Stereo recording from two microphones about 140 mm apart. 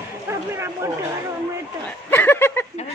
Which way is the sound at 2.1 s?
15° left (ahead or behind).